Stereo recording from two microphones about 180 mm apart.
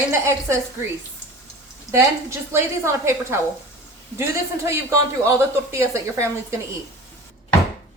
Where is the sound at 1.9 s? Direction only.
15° right (ahead or behind).